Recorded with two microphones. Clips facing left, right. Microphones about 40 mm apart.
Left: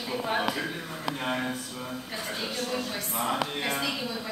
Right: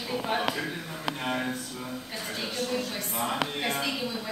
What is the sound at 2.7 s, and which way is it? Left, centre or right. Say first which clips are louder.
Speech: even; centre.